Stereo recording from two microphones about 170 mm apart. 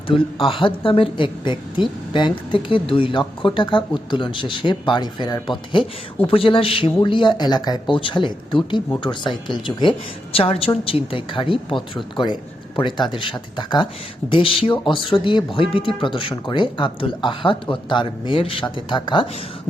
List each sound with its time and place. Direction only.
0.1 s a woman's voice: 35° left (ahead or behind)